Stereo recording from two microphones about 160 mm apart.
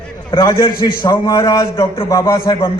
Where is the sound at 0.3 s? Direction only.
30° left (ahead or behind).